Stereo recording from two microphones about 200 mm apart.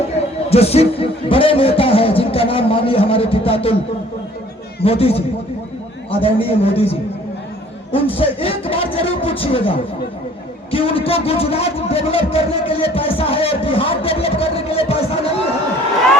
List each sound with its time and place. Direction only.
0.5 s a man's voice: 30° left (ahead or behind)
4.8 s a man's voice: 30° left (ahead or behind)
7.9 s a man's voice: 30° left (ahead or behind)